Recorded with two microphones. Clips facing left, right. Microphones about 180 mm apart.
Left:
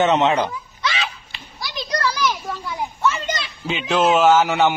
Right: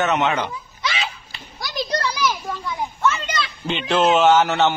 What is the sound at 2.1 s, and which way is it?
Children playing, 10° right (ahead or behind).